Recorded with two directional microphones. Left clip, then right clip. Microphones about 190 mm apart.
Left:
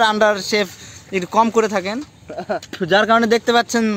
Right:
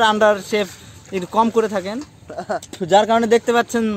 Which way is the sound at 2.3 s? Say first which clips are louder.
Left 1 dB; 35° left (ahead or behind).